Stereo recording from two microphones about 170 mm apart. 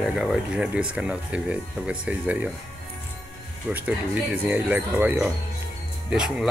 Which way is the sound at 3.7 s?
10° right (ahead or behind).